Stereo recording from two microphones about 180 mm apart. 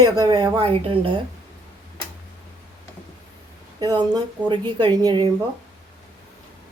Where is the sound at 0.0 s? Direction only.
20° right (ahead or behind).